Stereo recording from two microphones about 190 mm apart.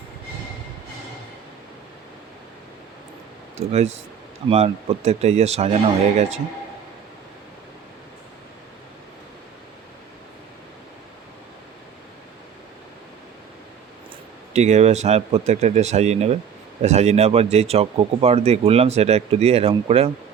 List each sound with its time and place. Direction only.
3.7 s speech: 35° right (ahead or behind)
14.5 s speech: 35° right (ahead or behind)